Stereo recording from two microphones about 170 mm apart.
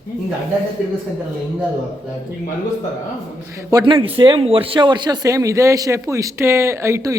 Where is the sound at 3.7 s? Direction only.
25° right (ahead or behind).